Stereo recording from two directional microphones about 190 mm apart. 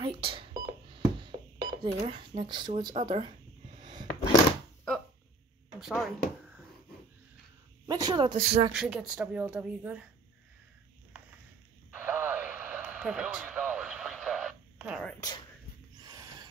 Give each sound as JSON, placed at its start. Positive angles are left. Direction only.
{"t": 0.0, "sound": "telephone dialing", "side_deg": -25}
{"t": 1.8, "sound": "speech", "side_deg": -30}
{"t": 3.8, "sound": "a sound", "side_deg": -20}
{"t": 5.8, "sound": "speech", "side_deg": 0}
{"t": 7.8, "sound": "speech", "side_deg": -20}
{"t": 8.7, "sound": "a woman's voice", "side_deg": -5}
{"t": 11.9, "sound": "radio", "side_deg": -10}
{"t": 15.1, "sound": "speech", "side_deg": 20}
{"t": 16.0, "sound": "a sound", "side_deg": -20}